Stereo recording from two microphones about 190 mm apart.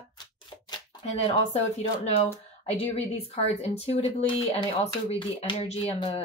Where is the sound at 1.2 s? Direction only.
35° left (ahead or behind).